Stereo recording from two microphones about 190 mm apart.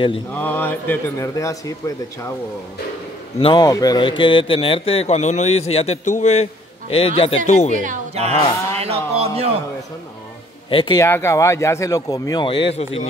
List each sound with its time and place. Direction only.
0.3 s speech: 10° left (ahead or behind)
3.3 s a man's voice: 25° left (ahead or behind)
7.7 s speech: 40° right (ahead or behind)
8.7 s music: 30° right (ahead or behind)
10.7 s speech: 30° left (ahead or behind)
11.0 s speech: 15° left (ahead or behind); by 13.0 s 30° left (ahead or behind)